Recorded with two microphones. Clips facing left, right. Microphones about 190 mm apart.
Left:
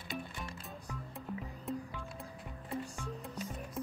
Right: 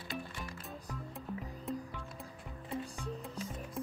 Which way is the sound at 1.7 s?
Centre (ahead or behind).